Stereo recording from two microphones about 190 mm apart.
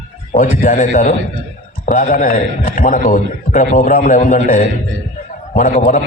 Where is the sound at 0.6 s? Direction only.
45° left (ahead or behind).